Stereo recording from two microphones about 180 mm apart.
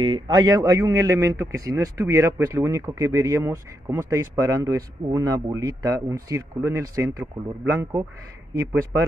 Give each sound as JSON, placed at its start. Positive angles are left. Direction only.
{"t": 0.0, "sound": "a man's voice", "side_deg": -25}